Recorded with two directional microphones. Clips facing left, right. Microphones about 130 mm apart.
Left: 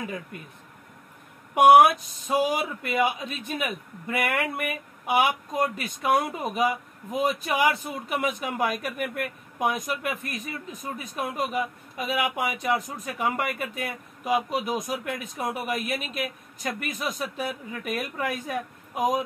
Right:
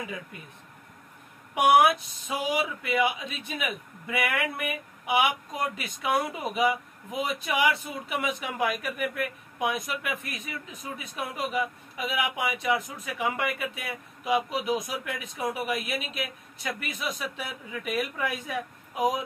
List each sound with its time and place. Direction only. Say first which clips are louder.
1.5 s a man's voice: left 5 dB; 40° left (ahead or behind)